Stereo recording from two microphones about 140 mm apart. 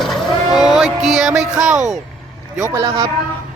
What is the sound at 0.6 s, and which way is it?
Music, 5° right (ahead or behind).